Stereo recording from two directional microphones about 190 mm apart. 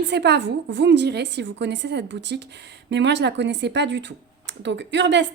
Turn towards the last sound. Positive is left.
turn(degrees=-70)  # may be behind; listen again after turning